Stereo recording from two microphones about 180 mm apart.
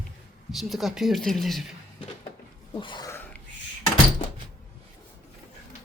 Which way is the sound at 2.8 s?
25° left (ahead or behind).